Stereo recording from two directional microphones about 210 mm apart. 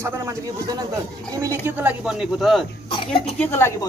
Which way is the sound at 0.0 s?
15° right (ahead or behind).